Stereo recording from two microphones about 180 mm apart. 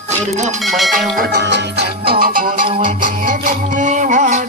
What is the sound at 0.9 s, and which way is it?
Music, 60° right (ahead or behind).